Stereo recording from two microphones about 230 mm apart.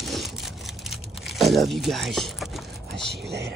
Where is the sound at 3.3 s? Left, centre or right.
Right.